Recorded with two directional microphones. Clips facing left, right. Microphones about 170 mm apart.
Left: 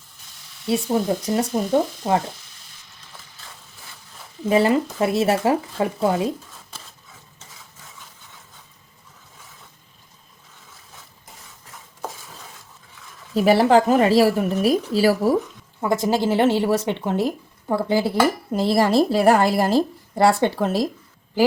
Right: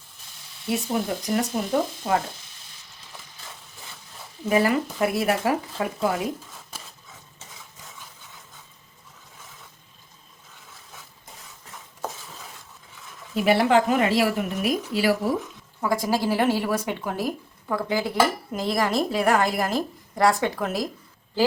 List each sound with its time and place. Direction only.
0.7 s speech: 25° left (ahead or behind)
4.4 s speech: 25° left (ahead or behind)
13.3 s a woman's voice: 35° left (ahead or behind)
15.8 s speech: 25° left (ahead or behind)